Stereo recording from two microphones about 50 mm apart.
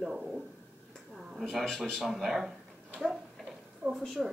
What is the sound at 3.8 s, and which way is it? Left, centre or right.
Speech, centre.